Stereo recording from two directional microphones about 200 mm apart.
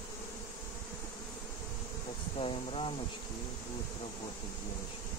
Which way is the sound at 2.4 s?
25° left (ahead or behind).